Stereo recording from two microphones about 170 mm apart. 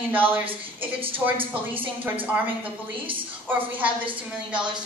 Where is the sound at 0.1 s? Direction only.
10° right (ahead or behind).